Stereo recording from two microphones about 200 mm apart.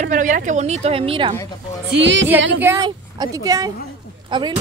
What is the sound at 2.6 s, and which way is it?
A woman's voice, 20° right (ahead or behind).